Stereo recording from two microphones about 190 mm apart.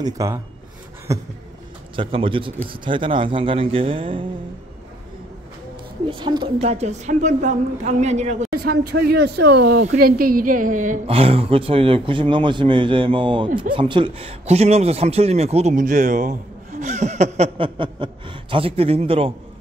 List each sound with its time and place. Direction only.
0.0 s speech: 20° right (ahead or behind)
2.0 s speech: 30° right (ahead or behind)
6.0 s speech: 25° right (ahead or behind)
8.5 s a woman's voice: 55° right (ahead or behind)
11.1 s speech: 30° right (ahead or behind)